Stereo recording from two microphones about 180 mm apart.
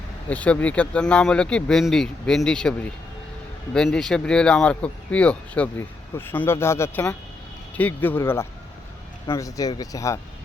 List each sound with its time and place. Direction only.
0.3 s speech: 10° left (ahead or behind)